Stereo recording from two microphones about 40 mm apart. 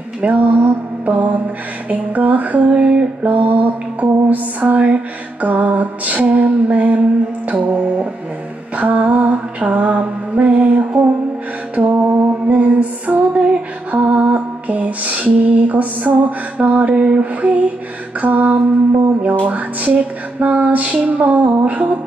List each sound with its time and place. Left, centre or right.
0.2 s mantra: right
1.9 s music: right
11.7 s mantra: right
12.0 s mantra: right
12.4 s music: right
13.9 s lullaby: right
16.9 s music: right